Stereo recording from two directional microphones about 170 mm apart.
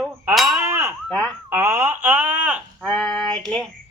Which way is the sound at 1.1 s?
5° left (ahead or behind).